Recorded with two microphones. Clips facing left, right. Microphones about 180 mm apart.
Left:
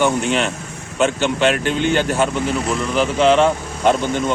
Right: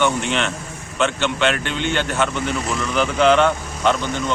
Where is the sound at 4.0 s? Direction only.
50° left (ahead or behind).